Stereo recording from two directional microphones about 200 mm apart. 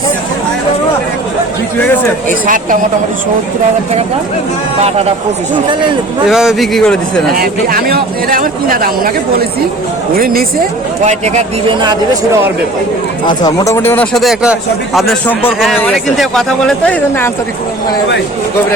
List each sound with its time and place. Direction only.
6.2 s speech: centre (ahead or behind)
7.3 s speech: 50° right (ahead or behind)
10.2 s speech: 45° right (ahead or behind)
11.7 s speech: 20° right (ahead or behind)
13.2 s speech: 20° left (ahead or behind)